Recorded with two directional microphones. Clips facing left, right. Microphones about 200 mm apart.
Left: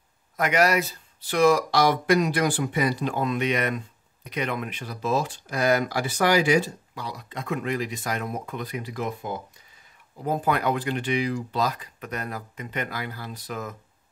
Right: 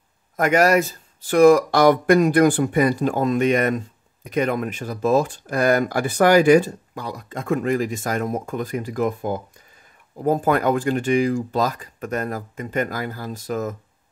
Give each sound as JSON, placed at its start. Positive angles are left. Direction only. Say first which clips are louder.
{"t": 0.4, "sound": "speech", "louder": "right 5 dB", "side_deg": -45}